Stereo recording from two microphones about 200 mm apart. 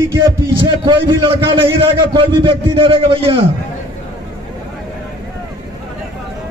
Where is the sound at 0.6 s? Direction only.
25° right (ahead or behind).